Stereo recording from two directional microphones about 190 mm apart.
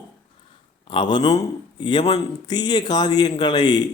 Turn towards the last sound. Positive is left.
turn(degrees=20)  # may be behind; listen again after turning